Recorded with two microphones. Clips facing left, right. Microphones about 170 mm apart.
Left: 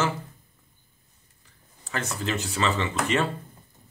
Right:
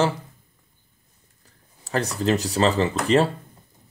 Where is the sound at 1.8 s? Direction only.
35° right (ahead or behind).